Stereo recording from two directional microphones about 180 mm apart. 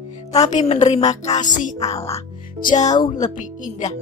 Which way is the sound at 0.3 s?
40° left (ahead or behind).